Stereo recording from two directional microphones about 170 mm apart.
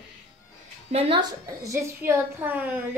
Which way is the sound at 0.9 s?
35° right (ahead or behind).